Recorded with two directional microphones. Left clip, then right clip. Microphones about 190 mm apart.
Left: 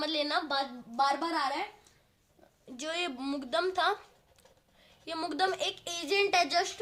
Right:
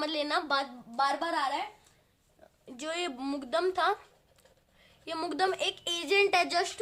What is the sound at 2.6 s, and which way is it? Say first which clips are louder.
A child's voice: even; 20° right (ahead or behind).